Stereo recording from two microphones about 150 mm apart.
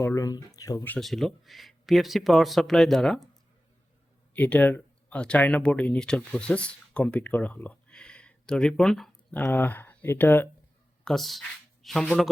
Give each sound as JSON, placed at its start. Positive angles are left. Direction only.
{"t": 0.0, "sound": "speech", "side_deg": 20}
{"t": 0.9, "sound": "speech", "side_deg": 5}
{"t": 4.4, "sound": "speech", "side_deg": 10}
{"t": 11.0, "sound": "speech", "side_deg": 0}